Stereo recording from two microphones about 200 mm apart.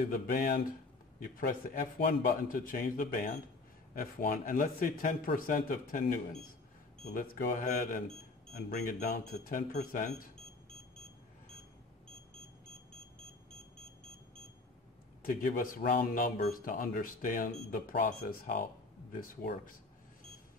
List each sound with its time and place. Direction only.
0.1 s speech: 45° left (ahead or behind)
15.2 s speech: 45° left (ahead or behind)